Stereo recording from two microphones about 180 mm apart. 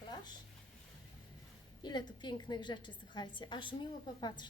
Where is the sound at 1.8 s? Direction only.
25° left (ahead or behind).